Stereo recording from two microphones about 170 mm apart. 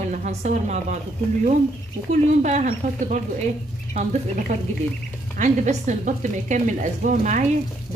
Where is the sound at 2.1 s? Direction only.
45° right (ahead or behind).